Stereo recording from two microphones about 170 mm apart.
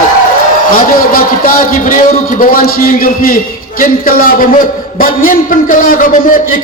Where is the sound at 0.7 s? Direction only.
55° left (ahead or behind).